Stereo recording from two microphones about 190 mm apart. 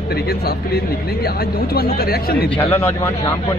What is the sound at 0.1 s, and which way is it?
Speech, 55° left (ahead or behind).